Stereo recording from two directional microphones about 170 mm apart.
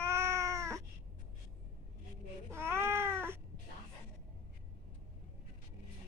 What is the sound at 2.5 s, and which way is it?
Cat, 15° right (ahead or behind).